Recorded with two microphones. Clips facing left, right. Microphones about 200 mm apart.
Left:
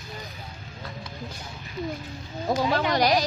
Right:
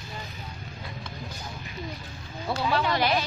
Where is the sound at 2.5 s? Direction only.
40° left (ahead or behind).